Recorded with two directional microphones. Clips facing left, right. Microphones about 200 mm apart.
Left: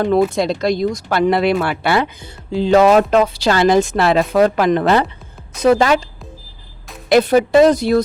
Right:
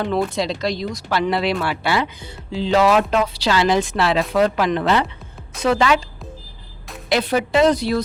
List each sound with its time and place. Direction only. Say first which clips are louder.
0.0 s speech: left 6 dB; 50° left (ahead or behind)
7.1 s speech: left 7 dB; 45° left (ahead or behind)